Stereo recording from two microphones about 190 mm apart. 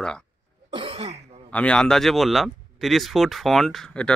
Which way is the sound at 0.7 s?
25° right (ahead or behind).